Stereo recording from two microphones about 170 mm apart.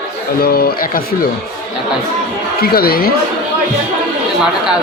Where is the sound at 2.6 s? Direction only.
60° left (ahead or behind).